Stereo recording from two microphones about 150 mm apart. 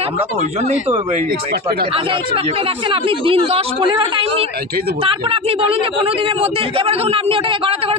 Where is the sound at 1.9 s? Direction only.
40° right (ahead or behind).